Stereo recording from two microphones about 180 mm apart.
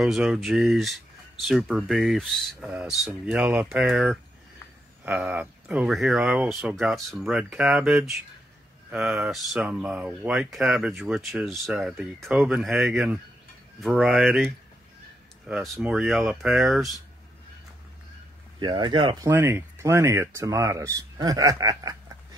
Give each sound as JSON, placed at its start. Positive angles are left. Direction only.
{"t": 0.0, "sound": "speech", "side_deg": 0}
{"t": 18.6, "sound": "speech", "side_deg": -25}
{"t": 19.2, "sound": "speech", "side_deg": -15}